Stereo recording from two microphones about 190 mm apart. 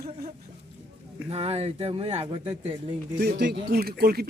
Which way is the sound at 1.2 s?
30° right (ahead or behind).